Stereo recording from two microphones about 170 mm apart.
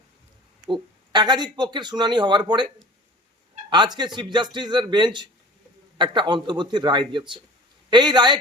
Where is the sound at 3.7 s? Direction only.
25° right (ahead or behind).